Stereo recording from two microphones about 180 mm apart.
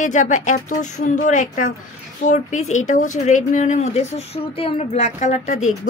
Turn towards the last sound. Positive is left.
turn(degrees=45)  # may be behind; listen again after turning